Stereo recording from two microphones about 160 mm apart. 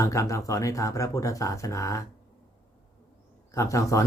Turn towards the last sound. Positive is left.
turn(degrees=20)  # may be behind; listen again after turning